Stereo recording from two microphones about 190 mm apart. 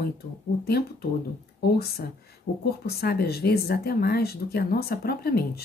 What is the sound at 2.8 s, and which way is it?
Speech, 55° left (ahead or behind).